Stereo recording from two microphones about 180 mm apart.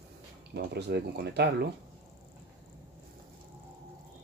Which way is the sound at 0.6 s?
65° right (ahead or behind).